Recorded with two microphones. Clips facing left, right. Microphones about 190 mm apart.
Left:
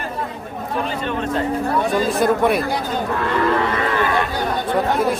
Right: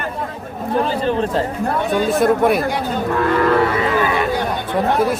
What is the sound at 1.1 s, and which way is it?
Speech, 35° right (ahead or behind).